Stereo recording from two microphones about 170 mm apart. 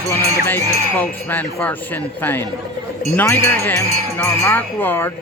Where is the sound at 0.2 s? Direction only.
20° right (ahead or behind).